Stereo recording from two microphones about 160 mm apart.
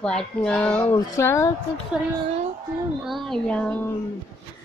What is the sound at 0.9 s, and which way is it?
Child singing, 20° left (ahead or behind).